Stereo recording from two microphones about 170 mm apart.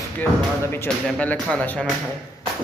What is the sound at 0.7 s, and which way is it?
Speech, 10° left (ahead or behind).